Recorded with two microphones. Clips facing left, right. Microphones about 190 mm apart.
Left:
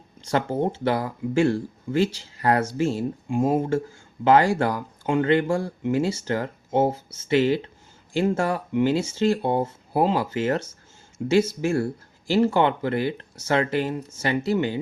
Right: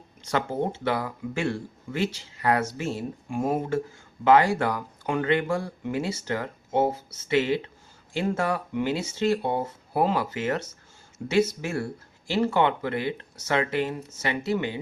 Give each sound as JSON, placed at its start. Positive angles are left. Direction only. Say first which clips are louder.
{"t": 0.2, "sound": "speech", "louder": "left 3 dB", "side_deg": 30}